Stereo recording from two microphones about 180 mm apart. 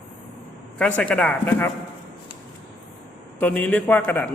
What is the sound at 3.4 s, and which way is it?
Speech, 10° left (ahead or behind).